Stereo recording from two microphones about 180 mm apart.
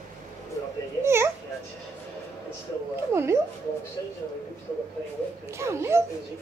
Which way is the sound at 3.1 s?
15° right (ahead or behind).